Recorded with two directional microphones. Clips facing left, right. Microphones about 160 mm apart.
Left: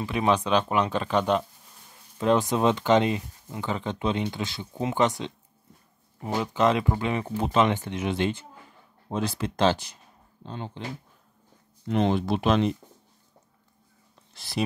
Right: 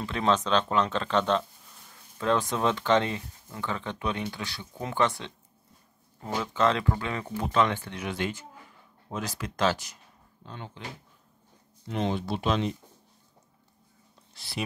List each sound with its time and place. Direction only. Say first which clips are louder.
0.0 s speech: left 2 dB; 10° left (ahead or behind); by 10.8 s 30° left (ahead or behind)
11.9 s speech: left 5 dB; 65° left (ahead or behind)